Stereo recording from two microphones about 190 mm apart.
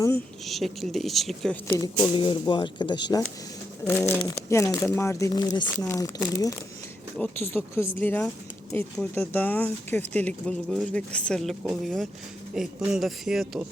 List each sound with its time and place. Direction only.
0.4 s speech: centre (ahead or behind)
2.1 s speech: 25° left (ahead or behind)
3.8 s speech: 10° left (ahead or behind)